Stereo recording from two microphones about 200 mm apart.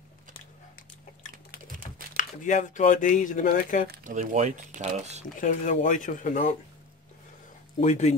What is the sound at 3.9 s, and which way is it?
Speech, 40° right (ahead or behind).